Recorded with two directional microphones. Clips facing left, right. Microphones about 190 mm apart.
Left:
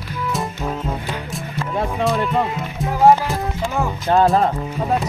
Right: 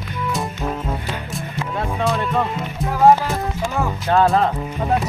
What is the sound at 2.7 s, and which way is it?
Music, centre (ahead or behind).